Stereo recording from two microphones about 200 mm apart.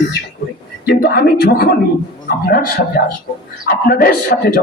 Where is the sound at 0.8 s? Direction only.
50° left (ahead or behind).